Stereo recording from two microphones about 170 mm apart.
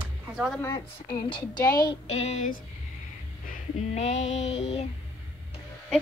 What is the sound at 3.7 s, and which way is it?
Female singing, 40° left (ahead or behind).